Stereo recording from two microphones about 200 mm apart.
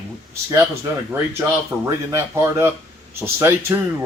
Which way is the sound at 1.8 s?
15° right (ahead or behind).